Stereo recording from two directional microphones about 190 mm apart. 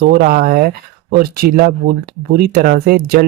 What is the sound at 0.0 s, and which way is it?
Speech, 50° right (ahead or behind).